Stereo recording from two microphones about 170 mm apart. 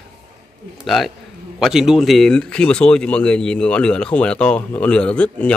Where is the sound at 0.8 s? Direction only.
Centre (ahead or behind).